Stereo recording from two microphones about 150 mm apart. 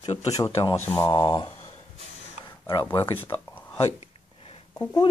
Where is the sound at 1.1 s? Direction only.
30° left (ahead or behind).